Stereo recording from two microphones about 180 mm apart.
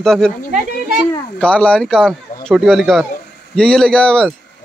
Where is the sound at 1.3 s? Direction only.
5° left (ahead or behind).